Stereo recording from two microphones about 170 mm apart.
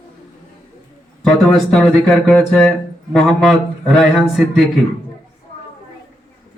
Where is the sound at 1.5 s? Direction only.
Centre (ahead or behind).